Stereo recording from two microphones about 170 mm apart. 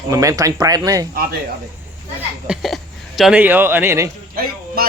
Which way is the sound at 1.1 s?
60° right (ahead or behind).